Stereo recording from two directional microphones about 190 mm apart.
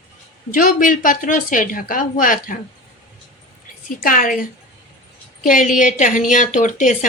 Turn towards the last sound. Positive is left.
turn(degrees=40)  # may be behind; listen again after turning